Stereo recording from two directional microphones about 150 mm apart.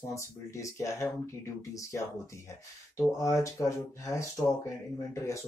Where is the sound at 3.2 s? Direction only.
20° left (ahead or behind).